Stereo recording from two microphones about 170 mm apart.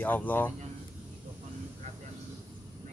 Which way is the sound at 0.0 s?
10° left (ahead or behind).